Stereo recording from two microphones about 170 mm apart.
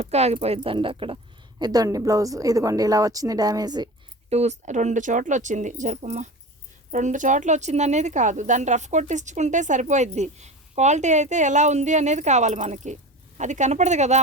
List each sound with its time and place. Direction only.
0.0 s speech: 40° right (ahead or behind); by 3.8 s 25° right (ahead or behind)
4.3 s a woman's voice: 40° right (ahead or behind)